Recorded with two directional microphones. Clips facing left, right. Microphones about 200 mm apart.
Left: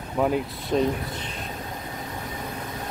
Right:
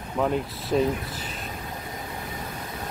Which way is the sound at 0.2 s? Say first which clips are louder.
Left 2 dB; centre (ahead or behind).